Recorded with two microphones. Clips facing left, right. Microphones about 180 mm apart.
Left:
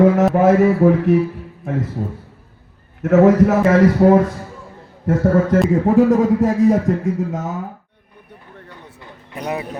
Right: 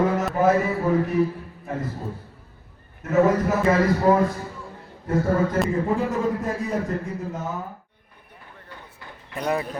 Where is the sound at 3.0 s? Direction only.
80° left.